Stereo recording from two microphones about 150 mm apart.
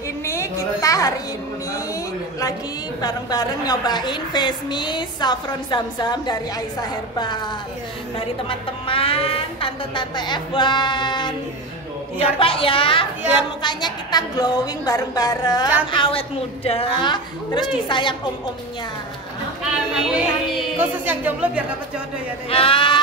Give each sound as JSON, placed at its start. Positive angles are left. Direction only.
{"t": 0.2, "sound": "a sound", "side_deg": 20}
{"t": 3.0, "sound": "a woman's voice", "side_deg": 25}
{"t": 8.5, "sound": "a woman's voice", "side_deg": 35}
{"t": 12.4, "sound": "a woman's voice", "side_deg": 35}
{"t": 19.9, "sound": "a woman's voice", "side_deg": -5}
{"t": 22.5, "sound": "speech", "side_deg": 35}